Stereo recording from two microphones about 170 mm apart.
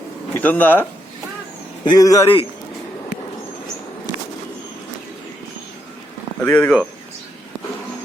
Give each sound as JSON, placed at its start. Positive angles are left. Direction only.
{"t": 0.3, "sound": "speech", "side_deg": 10}
{"t": 1.8, "sound": "a man's voice", "side_deg": 25}
{"t": 6.4, "sound": "speech", "side_deg": 5}